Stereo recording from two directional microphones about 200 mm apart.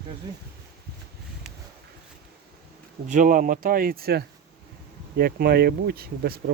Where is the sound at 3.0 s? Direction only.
40° right (ahead or behind).